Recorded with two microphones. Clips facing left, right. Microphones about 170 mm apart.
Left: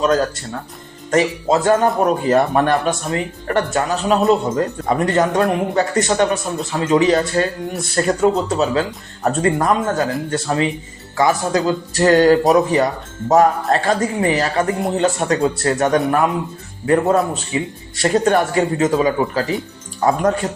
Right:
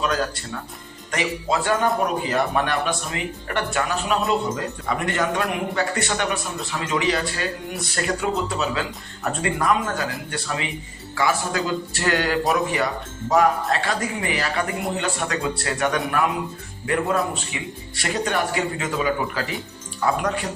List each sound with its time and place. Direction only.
1.1 s a man's voice: 40° left (ahead or behind)
18.0 s speech: 45° left (ahead or behind)